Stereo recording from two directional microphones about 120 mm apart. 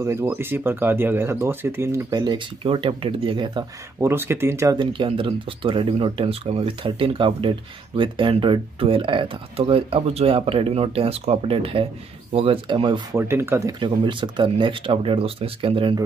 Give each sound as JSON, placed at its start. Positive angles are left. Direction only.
{"t": 0.0, "sound": "speech", "side_deg": -20}
{"t": 4.0, "sound": "speech", "side_deg": -20}
{"t": 4.7, "sound": "speech", "side_deg": -45}
{"t": 13.1, "sound": "speech", "side_deg": -20}
{"t": 13.7, "sound": "speech", "side_deg": -40}